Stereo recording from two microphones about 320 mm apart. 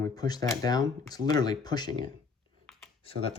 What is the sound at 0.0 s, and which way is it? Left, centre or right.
Speech, centre.